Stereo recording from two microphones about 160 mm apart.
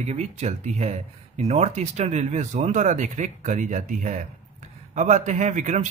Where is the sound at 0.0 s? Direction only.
45° right (ahead or behind).